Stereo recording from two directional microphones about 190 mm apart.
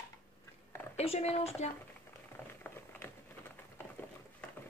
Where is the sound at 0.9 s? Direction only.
35° left (ahead or behind).